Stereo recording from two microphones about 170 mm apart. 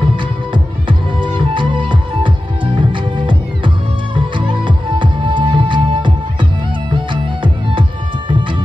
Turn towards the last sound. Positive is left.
turn(degrees=-30)  # may be behind; listen again after turning